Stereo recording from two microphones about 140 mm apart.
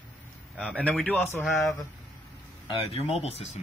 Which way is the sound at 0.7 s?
10° left (ahead or behind).